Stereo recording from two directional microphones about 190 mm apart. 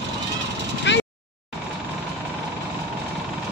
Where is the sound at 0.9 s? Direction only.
70° left (ahead or behind).